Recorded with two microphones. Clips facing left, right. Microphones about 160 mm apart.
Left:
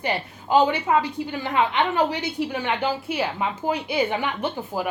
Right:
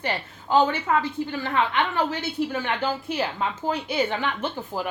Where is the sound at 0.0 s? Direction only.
15° left (ahead or behind).